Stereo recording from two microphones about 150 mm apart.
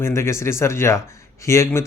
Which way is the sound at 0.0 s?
20° left (ahead or behind).